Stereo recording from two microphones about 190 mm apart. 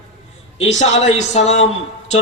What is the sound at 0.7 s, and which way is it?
Speech, 35° left (ahead or behind).